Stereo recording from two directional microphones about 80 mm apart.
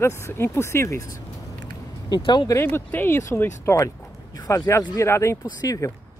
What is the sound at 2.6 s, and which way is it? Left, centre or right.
Speech, left.